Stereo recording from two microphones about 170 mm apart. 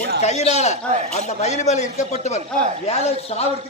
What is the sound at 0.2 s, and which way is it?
Speech, 40° left (ahead or behind).